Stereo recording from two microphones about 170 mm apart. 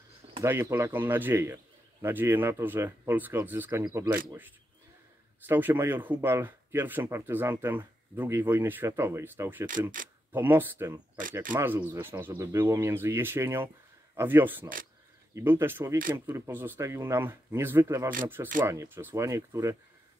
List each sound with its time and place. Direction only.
0.4 s speech: 15° right (ahead or behind)
9.7 s speech: 50° right (ahead or behind)
10.3 s speech: 10° right (ahead or behind)